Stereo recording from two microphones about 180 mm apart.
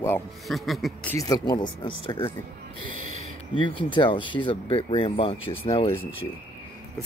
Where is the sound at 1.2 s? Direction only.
20° left (ahead or behind).